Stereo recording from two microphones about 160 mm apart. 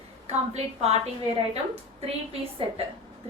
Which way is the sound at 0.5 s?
40° right (ahead or behind).